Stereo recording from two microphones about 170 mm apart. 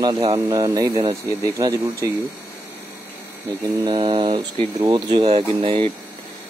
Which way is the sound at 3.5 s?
25° right (ahead or behind).